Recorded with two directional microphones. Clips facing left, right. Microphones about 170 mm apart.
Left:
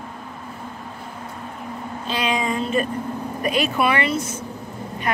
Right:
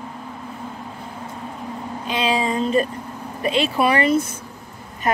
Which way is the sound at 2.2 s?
30° right (ahead or behind).